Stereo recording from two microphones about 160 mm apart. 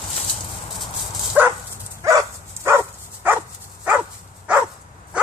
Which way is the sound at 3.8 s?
10° right (ahead or behind).